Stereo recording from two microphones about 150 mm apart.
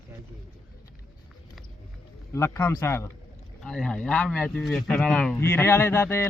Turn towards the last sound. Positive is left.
turn(degrees=15)  # may be behind; listen again after turning